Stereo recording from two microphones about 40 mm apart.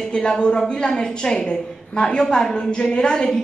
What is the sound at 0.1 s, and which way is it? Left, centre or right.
A woman's voice, centre.